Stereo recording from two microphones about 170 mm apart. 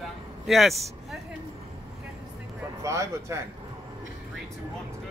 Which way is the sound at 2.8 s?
15° right (ahead or behind).